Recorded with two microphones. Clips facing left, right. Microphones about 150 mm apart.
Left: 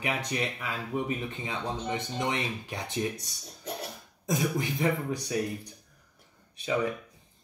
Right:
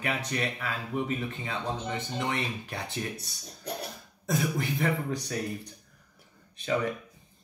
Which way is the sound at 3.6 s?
Centre (ahead or behind).